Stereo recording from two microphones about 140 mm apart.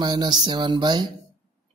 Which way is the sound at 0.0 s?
30° right (ahead or behind).